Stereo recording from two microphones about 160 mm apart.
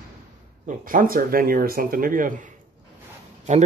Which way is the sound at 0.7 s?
60° right (ahead or behind).